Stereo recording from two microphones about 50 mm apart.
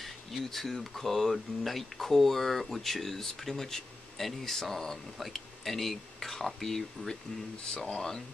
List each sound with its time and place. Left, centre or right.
0.0 s speech: centre
7.6 s speech: centre